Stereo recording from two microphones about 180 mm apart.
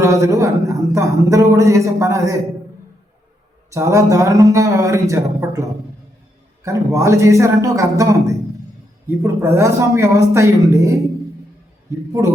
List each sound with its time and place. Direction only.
0.0 s a woman's voice: 15° right (ahead or behind)
3.7 s speech: 15° right (ahead or behind)